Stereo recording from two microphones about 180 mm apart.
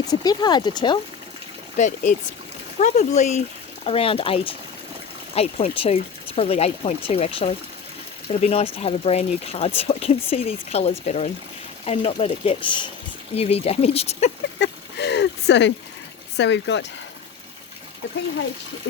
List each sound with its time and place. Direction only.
0.1 s speech: 20° left (ahead or behind)
1.7 s speech: 40° left (ahead or behind)
14.6 s a sound: 70° left (ahead or behind)
16.4 s speech: 80° left